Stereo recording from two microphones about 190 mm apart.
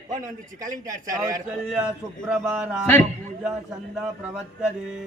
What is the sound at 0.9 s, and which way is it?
Speech, 20° right (ahead or behind).